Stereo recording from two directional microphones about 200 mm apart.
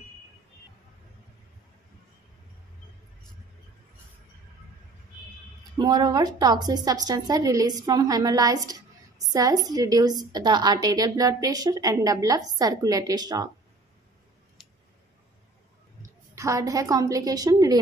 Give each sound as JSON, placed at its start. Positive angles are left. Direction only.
{"t": 5.8, "sound": "a woman's voice", "side_deg": -20}
{"t": 16.3, "sound": "a woman's voice", "side_deg": -15}